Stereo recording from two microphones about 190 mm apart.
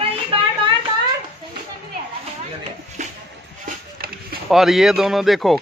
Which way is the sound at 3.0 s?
40° right (ahead or behind).